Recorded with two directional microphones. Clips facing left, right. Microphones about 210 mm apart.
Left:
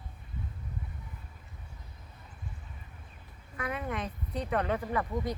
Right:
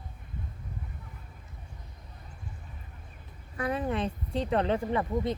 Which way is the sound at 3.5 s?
30° right (ahead or behind).